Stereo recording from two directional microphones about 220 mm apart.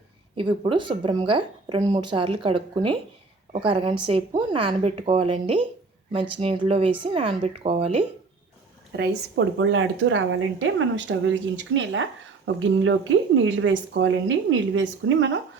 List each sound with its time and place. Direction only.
0.3 s speech: 25° right (ahead or behind)
8.9 s a woman's voice: 50° right (ahead or behind)